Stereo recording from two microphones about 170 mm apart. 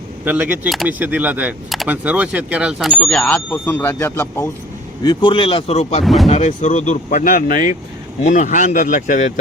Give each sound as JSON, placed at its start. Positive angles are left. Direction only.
{"t": 0.3, "sound": "speech", "side_deg": -10}
{"t": 5.0, "sound": "speech", "side_deg": 30}